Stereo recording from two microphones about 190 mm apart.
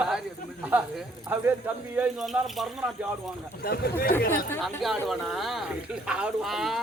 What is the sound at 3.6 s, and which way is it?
Speech, 50° left (ahead or behind).